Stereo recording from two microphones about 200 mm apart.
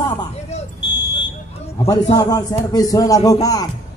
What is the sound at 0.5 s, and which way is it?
Speech, 30° left (ahead or behind).